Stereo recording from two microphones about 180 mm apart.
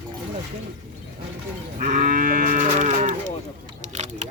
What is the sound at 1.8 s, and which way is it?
Sheep, 55° right (ahead or behind).